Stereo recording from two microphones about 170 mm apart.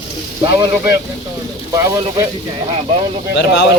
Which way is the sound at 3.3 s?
85° left.